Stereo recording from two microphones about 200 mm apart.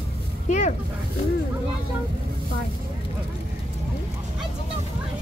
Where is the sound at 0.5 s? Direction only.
35° left (ahead or behind).